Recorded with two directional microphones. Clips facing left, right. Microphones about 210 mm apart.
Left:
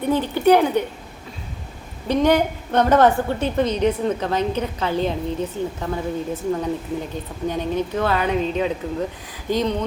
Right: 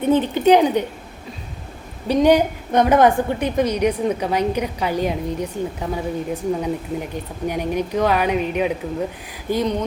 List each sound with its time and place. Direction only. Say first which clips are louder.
0.0 s a woman's voice: right 2 dB; 20° right (ahead or behind)
2.0 s a woman's voice: right 2 dB; 15° right (ahead or behind)